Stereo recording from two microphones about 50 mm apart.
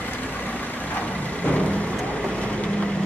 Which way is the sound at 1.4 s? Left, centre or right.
Left.